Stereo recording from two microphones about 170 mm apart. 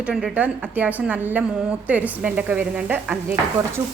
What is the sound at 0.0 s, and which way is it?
Speech, 5° right (ahead or behind).